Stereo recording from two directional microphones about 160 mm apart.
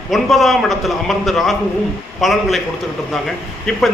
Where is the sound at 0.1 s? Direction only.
Centre (ahead or behind).